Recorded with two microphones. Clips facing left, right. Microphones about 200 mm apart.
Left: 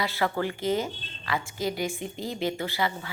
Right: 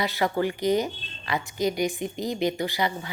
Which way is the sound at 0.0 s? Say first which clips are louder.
Right 3 dB; 15° right (ahead or behind).